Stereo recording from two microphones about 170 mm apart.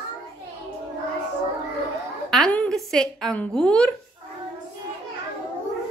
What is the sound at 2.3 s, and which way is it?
A woman's voice, 5° left (ahead or behind).